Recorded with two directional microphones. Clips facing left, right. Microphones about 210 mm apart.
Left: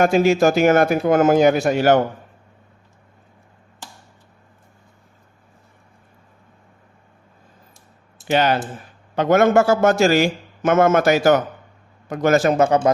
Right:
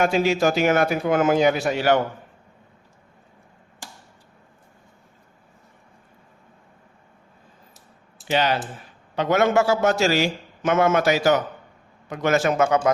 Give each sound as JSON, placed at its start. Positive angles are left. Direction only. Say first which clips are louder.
{"t": 0.0, "sound": "a man's voice", "louder": "left 5 dB", "side_deg": 45}
{"t": 8.3, "sound": "a man's voice", "louder": "left 4 dB", "side_deg": 50}